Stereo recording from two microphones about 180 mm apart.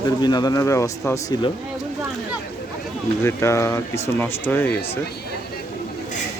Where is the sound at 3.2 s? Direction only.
15° left (ahead or behind).